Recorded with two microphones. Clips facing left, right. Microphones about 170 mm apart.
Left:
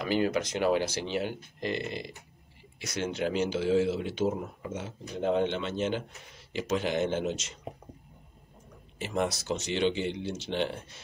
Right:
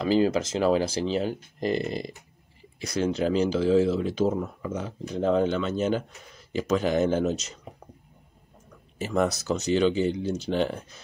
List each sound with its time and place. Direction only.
0.0 s speech: 30° right (ahead or behind)
8.9 s speech: 40° right (ahead or behind)